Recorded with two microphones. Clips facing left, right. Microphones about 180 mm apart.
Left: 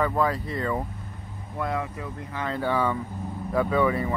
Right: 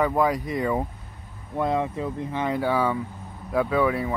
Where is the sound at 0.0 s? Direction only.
15° right (ahead or behind).